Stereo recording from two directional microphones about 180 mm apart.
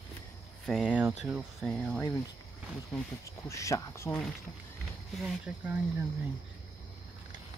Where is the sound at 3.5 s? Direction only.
15° left (ahead or behind).